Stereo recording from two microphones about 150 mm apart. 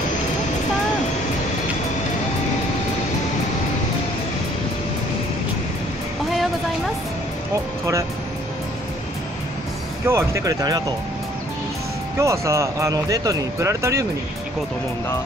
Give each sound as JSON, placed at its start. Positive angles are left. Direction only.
{"t": 10.0, "sound": "speech", "side_deg": -20}
{"t": 12.2, "sound": "speech", "side_deg": -20}